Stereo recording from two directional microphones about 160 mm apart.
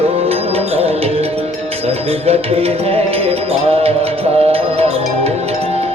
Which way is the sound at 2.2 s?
40° right (ahead or behind).